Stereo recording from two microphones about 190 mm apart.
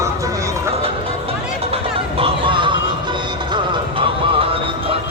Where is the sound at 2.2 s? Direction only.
25° right (ahead or behind).